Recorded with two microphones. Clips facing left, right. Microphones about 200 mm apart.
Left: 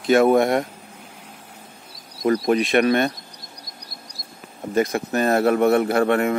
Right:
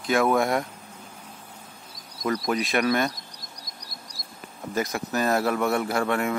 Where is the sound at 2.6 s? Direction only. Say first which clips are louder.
Left 7 dB; 60° left (ahead or behind).